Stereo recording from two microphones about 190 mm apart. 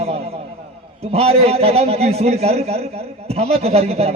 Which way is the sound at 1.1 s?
30° right (ahead or behind).